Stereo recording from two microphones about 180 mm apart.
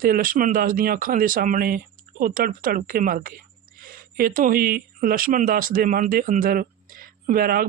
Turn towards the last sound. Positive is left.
turn(degrees=-55)  # may be behind; listen again after turning